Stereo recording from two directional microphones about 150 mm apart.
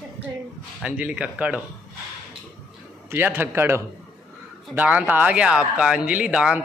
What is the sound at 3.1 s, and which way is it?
A man's voice, 15° right (ahead or behind).